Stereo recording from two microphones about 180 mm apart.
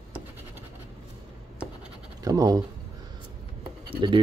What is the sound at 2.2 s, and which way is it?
Speech, 20° right (ahead or behind).